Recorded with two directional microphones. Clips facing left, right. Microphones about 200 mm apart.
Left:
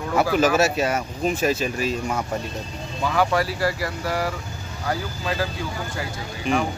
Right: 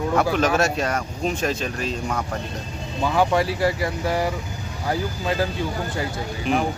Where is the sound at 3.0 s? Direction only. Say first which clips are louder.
Right 2 dB; 20° right (ahead or behind).